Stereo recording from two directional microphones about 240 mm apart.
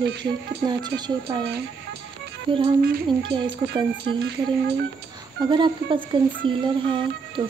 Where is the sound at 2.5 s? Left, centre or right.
Right.